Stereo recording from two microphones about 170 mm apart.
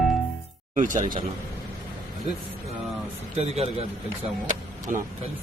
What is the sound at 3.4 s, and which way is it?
Speech, 35° right (ahead or behind).